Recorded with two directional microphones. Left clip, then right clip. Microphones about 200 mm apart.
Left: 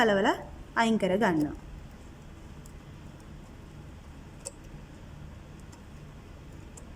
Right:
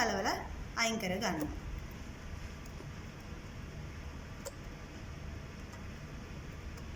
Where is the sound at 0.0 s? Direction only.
60° left (ahead or behind).